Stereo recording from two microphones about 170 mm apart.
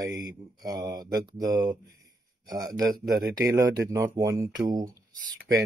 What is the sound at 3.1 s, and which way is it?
Speech, 60° right (ahead or behind).